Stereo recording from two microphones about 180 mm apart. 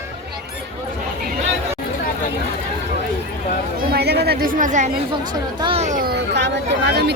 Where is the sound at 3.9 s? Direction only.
65° right (ahead or behind); by 4.9 s 45° right (ahead or behind).